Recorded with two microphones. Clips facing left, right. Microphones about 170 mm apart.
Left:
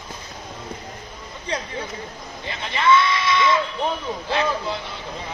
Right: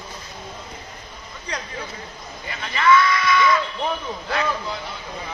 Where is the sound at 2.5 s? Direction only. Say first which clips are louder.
Right 1 dB; 25° left (ahead or behind).